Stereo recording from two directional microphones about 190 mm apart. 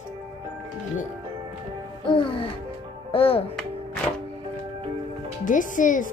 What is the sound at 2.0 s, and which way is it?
Music, 25° left (ahead or behind).